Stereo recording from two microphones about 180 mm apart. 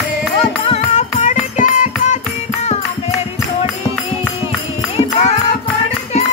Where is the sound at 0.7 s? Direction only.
40° left (ahead or behind).